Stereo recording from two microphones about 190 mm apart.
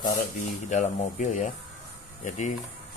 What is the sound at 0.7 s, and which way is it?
Speech, 40° left (ahead or behind).